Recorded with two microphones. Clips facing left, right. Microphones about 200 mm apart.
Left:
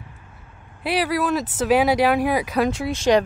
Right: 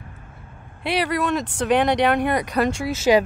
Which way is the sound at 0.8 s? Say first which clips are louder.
Left 1 dB; centre (ahead or behind).